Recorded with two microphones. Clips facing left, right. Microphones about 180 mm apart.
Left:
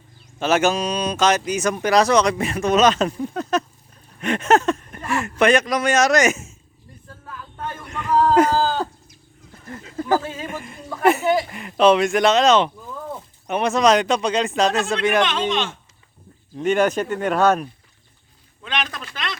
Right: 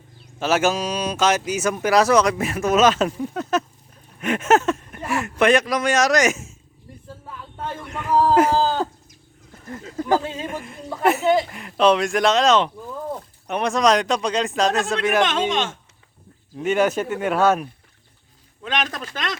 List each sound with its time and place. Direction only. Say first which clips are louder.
0.3 s speech: left 1 dB; 5° right (ahead or behind)
7.9 s speech: even; 5° right (ahead or behind)
8.6 s livestock: right 1 dB; 20° right (ahead or behind)
10.1 s speech: even; 20° right (ahead or behind)
10.4 s speech: right 1 dB; centre (ahead or behind)
15.2 s a man's voice: right 1 dB; 45° right (ahead or behind)
16.6 s speech: left 1 dB; 5° right (ahead or behind)
18.6 s a man's voice: right 2 dB; 45° right (ahead or behind)